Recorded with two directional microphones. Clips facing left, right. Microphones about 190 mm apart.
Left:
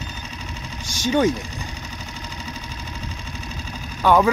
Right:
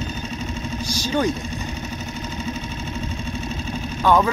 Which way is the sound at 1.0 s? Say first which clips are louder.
Left 4 dB; 20° left (ahead or behind).